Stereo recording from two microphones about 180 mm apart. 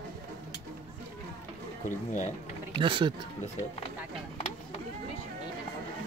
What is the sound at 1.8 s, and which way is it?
Speech, 45° left (ahead or behind).